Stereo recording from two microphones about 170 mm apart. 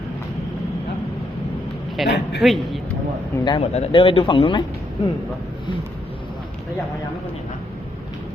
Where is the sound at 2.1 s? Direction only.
90° left.